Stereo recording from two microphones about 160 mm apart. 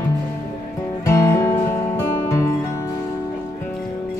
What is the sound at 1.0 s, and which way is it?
Music, 20° left (ahead or behind).